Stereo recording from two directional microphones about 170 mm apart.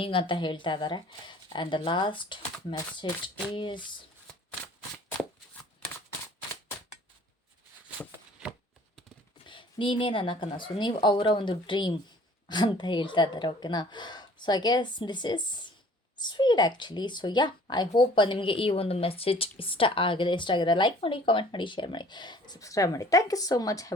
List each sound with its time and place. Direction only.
0.0 s speech: 30° left (ahead or behind)
9.5 s speech: 30° left (ahead or behind)